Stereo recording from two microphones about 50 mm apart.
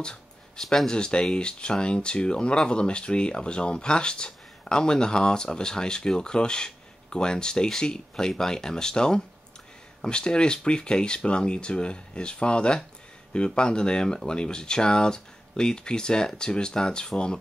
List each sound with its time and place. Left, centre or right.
0.6 s speech: centre